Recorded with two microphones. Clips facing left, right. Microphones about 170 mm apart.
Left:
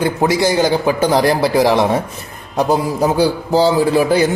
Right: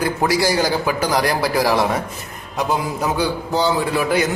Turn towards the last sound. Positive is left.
turn(degrees=30)  # may be behind; listen again after turning